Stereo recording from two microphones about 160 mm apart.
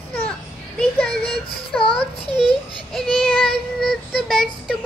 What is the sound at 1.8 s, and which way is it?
Speech, 35° left (ahead or behind).